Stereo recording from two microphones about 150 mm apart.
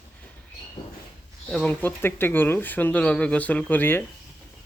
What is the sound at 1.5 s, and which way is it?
Speech, 10° left (ahead or behind).